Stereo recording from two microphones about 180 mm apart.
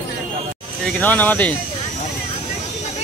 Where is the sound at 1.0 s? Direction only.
10° left (ahead or behind).